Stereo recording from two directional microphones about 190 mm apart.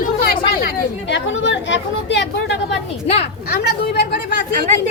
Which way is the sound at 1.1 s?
75° left (ahead or behind).